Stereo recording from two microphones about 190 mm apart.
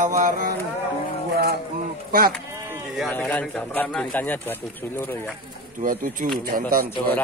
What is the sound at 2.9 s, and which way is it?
Speech, 5° left (ahead or behind).